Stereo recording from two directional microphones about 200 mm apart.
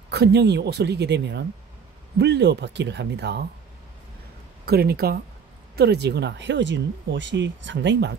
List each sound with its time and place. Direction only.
0.1 s speech: 55° right (ahead or behind)
4.6 s speech: 50° right (ahead or behind)